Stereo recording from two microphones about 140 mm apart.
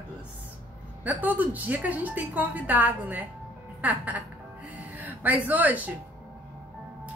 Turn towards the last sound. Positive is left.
turn(degrees=-10)  # may be behind; listen again after turning